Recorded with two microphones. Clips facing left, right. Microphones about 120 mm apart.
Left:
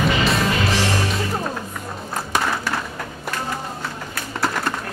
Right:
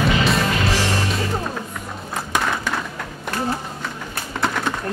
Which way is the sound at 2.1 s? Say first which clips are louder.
Even; centre (ahead or behind).